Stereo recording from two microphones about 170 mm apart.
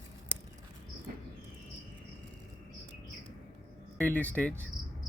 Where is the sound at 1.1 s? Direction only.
55° right (ahead or behind).